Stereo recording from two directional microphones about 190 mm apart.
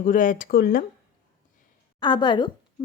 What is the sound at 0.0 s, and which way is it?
Speech, 45° left (ahead or behind).